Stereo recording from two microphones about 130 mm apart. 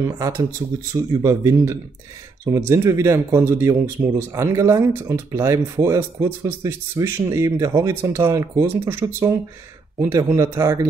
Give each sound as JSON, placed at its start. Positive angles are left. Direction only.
{"t": 0.0, "sound": "speech", "side_deg": -25}
{"t": 10.1, "sound": "speech", "side_deg": -25}